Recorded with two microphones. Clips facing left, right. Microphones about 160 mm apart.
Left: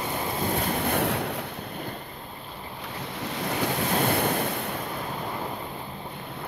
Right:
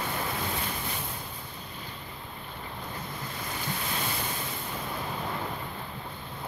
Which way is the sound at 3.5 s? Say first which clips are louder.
Left 9 dB; 70° left (ahead or behind).